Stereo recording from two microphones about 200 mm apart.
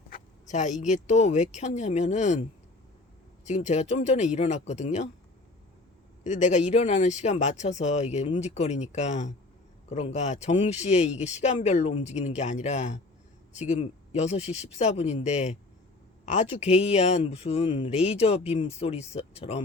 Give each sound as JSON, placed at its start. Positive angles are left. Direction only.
{"t": 0.1, "sound": "speech", "side_deg": 35}
{"t": 3.4, "sound": "speech", "side_deg": 35}
{"t": 6.2, "sound": "speech", "side_deg": 35}